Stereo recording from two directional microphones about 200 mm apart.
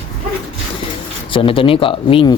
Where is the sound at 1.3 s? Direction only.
25° left (ahead or behind).